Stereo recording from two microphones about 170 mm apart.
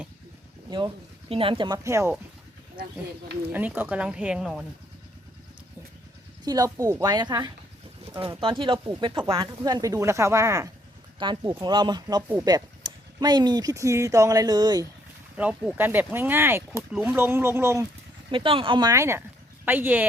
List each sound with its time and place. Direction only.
1.3 s speech: 30° right (ahead or behind)
3.5 s speech: 10° right (ahead or behind)
6.4 s speech: 20° right (ahead or behind)
11.2 s speech: 30° right (ahead or behind)
15.4 s speech: 10° right (ahead or behind)
16.9 s speech: centre (ahead or behind)
17.2 s speech: 15° right (ahead or behind)
18.3 s speech: 30° right (ahead or behind); by 20.1 s 10° right (ahead or behind)